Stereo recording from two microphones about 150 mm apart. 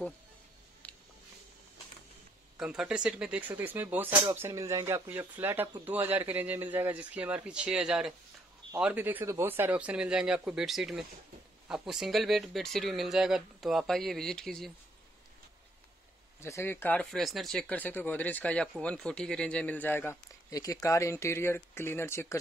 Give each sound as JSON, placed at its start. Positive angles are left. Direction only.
{"t": 2.5, "sound": "speech", "side_deg": -5}
{"t": 16.3, "sound": "speech", "side_deg": 20}